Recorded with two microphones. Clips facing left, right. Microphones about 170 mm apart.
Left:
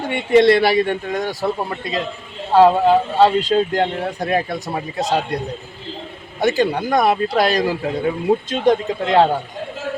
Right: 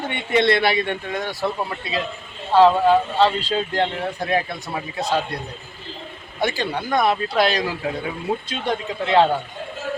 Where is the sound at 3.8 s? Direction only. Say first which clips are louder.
Left 3 dB; 40° left (ahead or behind).